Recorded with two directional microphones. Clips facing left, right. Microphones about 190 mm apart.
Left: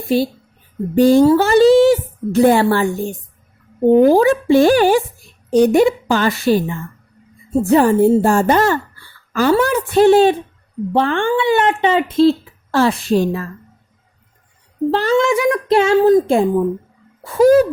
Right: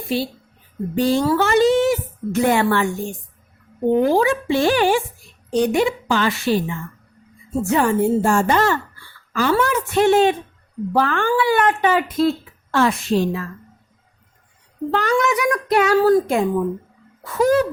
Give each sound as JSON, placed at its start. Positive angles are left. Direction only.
{"t": 0.1, "sound": "a woman's voice", "side_deg": 45}
{"t": 1.2, "sound": "speech", "side_deg": 30}
{"t": 3.9, "sound": "a woman's voice", "side_deg": 40}
{"t": 13.1, "sound": "a woman's voice", "side_deg": 45}
{"t": 14.8, "sound": "speech", "side_deg": 30}